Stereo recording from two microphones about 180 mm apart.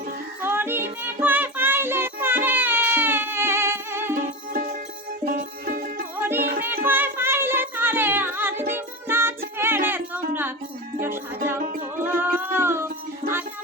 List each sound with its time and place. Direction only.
0.4 s music: 10° right (ahead or behind)
5.2 s music: 50° right (ahead or behind)
6.2 s music: 10° right (ahead or behind)
12.0 s music: 10° right (ahead or behind)